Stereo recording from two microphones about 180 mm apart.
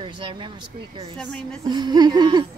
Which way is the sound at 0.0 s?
25° right (ahead or behind).